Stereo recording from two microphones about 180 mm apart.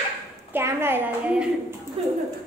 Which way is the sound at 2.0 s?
30° right (ahead or behind).